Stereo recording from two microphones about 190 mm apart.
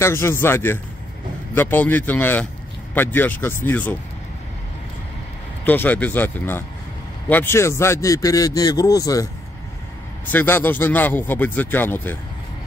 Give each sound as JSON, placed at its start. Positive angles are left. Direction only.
{"t": 0.0, "sound": "a man's voice", "side_deg": 15}
{"t": 5.7, "sound": "a man's voice", "side_deg": 10}
{"t": 10.3, "sound": "a man's voice", "side_deg": 10}